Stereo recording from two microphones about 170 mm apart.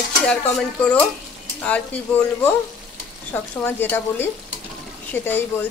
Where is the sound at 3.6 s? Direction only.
10° left (ahead or behind).